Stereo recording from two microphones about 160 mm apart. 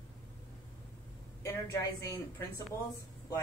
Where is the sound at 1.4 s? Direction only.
20° left (ahead or behind).